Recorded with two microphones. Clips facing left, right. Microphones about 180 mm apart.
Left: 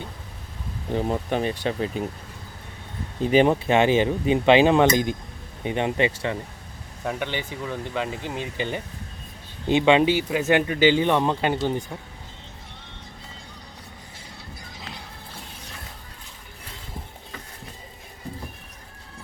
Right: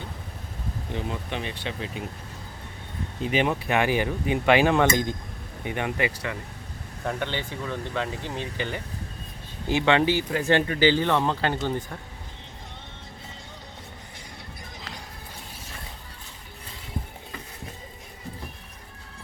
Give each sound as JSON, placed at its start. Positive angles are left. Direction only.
{"t": 0.9, "sound": "speech", "side_deg": 45}
{"t": 3.2, "sound": "speech", "side_deg": 35}
{"t": 7.0, "sound": "speech", "side_deg": 10}